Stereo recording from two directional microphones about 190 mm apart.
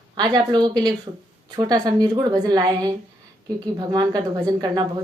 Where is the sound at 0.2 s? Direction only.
20° right (ahead or behind).